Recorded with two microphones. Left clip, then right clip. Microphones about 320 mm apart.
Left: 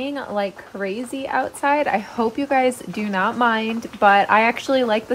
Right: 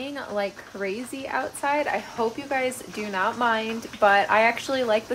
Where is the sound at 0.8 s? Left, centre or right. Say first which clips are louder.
Left 4 dB; left.